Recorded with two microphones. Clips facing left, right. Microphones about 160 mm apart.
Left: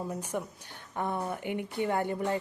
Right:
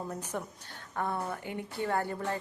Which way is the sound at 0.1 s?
10° left (ahead or behind).